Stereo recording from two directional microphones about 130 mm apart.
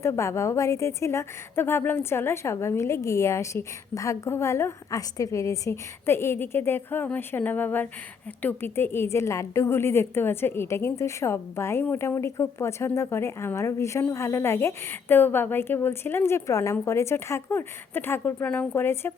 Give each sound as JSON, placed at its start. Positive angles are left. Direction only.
{"t": 0.0, "sound": "a woman's voice", "side_deg": 20}